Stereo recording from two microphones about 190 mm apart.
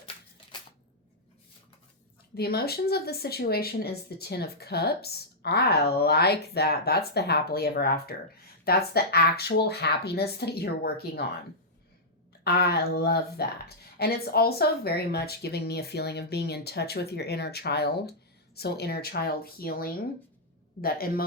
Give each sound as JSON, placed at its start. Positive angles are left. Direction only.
{"t": 2.3, "sound": "speech", "side_deg": 55}
{"t": 12.5, "sound": "a man's voice", "side_deg": 60}